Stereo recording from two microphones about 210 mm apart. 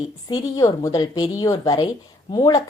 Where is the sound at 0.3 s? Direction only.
15° left (ahead or behind).